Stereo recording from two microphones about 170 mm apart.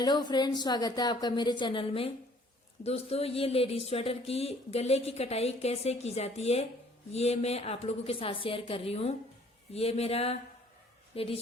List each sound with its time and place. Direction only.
0.0 s a woman's voice: 25° left (ahead or behind)